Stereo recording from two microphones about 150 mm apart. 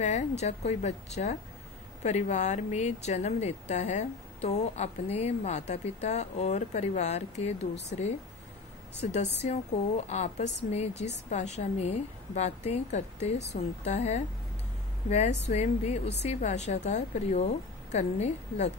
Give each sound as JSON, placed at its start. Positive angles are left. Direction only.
{"t": 0.0, "sound": "speech", "side_deg": 50}
{"t": 9.0, "sound": "speech", "side_deg": 50}